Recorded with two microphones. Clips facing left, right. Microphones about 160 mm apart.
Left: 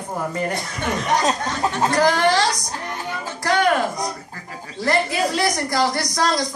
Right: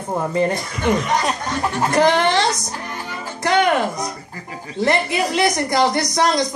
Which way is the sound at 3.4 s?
20° right (ahead or behind).